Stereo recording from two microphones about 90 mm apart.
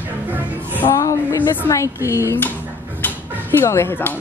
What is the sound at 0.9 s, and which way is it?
Speech, 35° left (ahead or behind).